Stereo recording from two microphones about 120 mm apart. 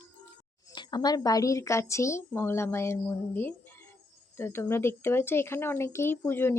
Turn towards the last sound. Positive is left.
turn(degrees=20)  # may be behind; listen again after turning